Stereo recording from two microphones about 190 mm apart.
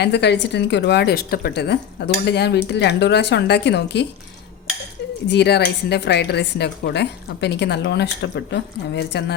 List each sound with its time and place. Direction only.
0.0 s a woman's voice: 60° left (ahead or behind)
5.3 s a woman's voice: 60° left (ahead or behind)